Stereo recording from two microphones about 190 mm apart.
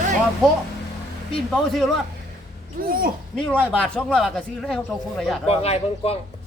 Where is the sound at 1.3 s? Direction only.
Centre (ahead or behind).